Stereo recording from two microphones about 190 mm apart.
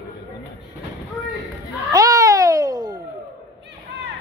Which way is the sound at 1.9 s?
20° right (ahead or behind).